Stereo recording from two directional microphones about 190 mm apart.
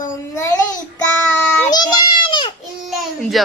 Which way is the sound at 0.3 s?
15° left (ahead or behind).